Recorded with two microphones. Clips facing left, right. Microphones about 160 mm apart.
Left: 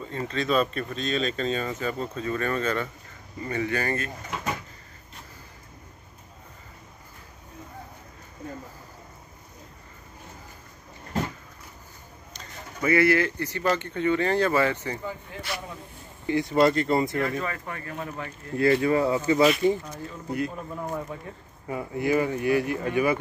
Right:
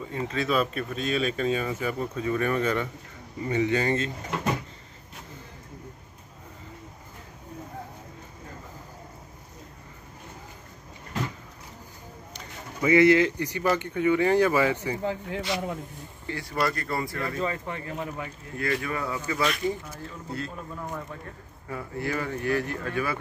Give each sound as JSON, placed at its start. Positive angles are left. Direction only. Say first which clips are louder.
{"t": 0.1, "sound": "speech", "louder": "left 1 dB", "side_deg": -10}
{"t": 12.3, "sound": "speech", "louder": "even", "side_deg": -15}
{"t": 15.0, "sound": "speech", "louder": "right 6 dB", "side_deg": -90}
{"t": 16.3, "sound": "speech", "louder": "left 8 dB", "side_deg": 20}
{"t": 17.4, "sound": "speech", "louder": "right 2 dB", "side_deg": -20}
{"t": 18.6, "sound": "speech", "louder": "left 8 dB", "side_deg": 30}
{"t": 20.2, "sound": "speech", "louder": "left 6 dB", "side_deg": 15}